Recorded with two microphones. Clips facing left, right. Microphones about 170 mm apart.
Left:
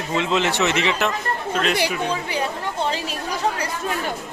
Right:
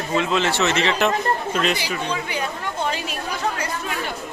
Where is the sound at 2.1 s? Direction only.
35° left (ahead or behind).